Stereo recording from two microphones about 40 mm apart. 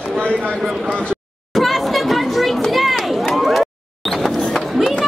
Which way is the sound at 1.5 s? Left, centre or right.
Centre.